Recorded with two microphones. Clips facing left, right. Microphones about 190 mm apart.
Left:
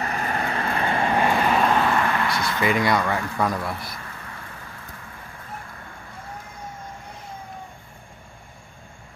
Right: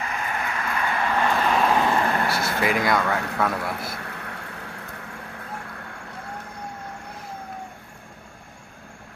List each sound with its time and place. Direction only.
0.0 s vehicle: 40° left (ahead or behind)
1.2 s vehicle: 15° left (ahead or behind)
1.5 s vehicle: centre (ahead or behind)
1.8 s vehicle: 20° right (ahead or behind)
2.0 s vehicle: 35° right (ahead or behind)
2.8 s a man's voice: centre (ahead or behind)
3.7 s vehicle: 70° right (ahead or behind)